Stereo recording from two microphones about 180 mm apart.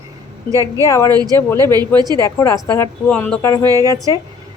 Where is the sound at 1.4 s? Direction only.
15° left (ahead or behind).